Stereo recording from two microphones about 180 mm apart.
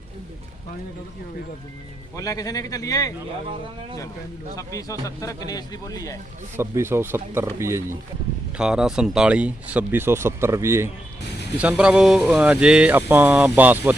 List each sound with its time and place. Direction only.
2.1 s speech: 20° left (ahead or behind)
4.5 s speech: 20° left (ahead or behind)
6.6 s speech: 15° right (ahead or behind)
8.5 s speech: 5° right (ahead or behind)